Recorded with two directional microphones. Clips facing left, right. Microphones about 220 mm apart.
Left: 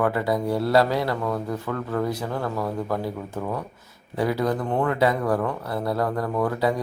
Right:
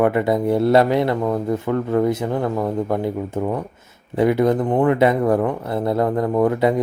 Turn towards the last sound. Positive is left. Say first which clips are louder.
# right 6 dB
turn(degrees=-20)  # may be behind; listen again after turning